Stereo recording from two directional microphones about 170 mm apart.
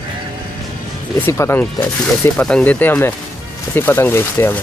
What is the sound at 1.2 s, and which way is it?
Speech, 15° left (ahead or behind).